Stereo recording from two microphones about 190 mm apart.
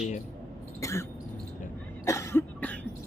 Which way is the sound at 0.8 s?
15° left (ahead or behind).